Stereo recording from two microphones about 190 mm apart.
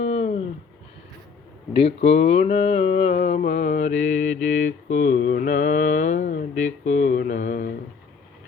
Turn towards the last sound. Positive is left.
turn(degrees=45)  # may be behind; listen again after turning